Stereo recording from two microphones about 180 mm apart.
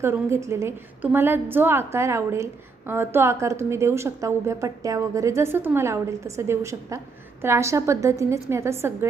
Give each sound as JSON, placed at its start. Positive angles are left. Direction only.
{"t": 0.0, "sound": "a woman's voice", "side_deg": -15}